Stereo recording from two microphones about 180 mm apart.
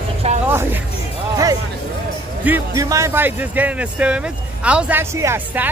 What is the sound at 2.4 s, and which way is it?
Speech, 15° right (ahead or behind).